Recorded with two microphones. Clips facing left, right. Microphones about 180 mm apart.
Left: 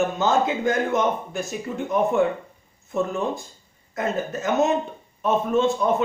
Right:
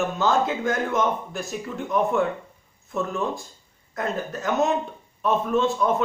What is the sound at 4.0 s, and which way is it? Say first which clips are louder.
Speech: left 2 dB; centre (ahead or behind).